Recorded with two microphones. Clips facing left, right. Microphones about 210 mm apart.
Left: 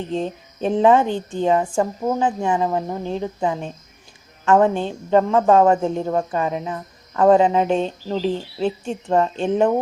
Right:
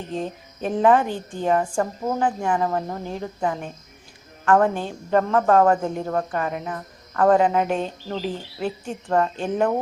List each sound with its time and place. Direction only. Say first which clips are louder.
0.1 s speech: left 4 dB; 25° left (ahead or behind)
1.6 s speech: left 3 dB; 5° left (ahead or behind); by 9.7 s 25° left (ahead or behind)